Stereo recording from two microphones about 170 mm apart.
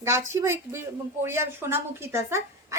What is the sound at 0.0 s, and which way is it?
A woman's voice, 15° right (ahead or behind).